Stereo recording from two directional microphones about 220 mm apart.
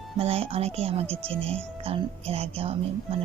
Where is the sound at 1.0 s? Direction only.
5° left (ahead or behind).